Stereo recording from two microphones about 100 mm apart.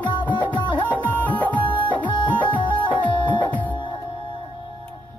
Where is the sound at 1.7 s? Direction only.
55° left (ahead or behind).